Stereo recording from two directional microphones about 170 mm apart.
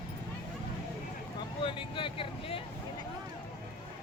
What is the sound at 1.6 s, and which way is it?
Vehicle, 30° left (ahead or behind).